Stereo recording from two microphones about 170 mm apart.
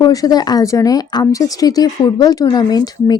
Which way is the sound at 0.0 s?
20° left (ahead or behind).